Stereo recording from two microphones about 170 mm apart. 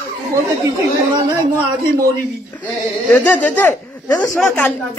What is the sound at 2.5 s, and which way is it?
Speech, 10° left (ahead or behind).